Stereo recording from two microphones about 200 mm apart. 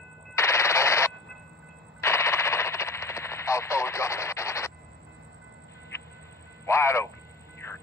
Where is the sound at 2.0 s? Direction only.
15° left (ahead or behind).